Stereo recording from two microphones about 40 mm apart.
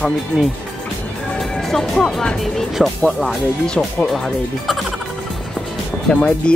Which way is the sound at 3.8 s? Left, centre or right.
Left.